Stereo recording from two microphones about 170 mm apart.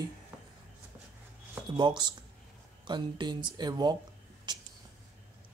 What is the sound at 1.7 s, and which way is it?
Speech, 25° right (ahead or behind).